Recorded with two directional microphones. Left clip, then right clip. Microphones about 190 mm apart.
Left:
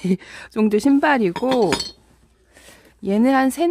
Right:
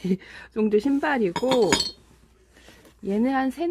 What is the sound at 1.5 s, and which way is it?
Speech, 5° left (ahead or behind).